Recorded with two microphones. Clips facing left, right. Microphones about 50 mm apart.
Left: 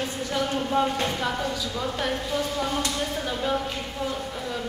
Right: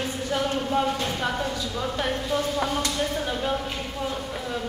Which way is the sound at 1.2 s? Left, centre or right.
Centre.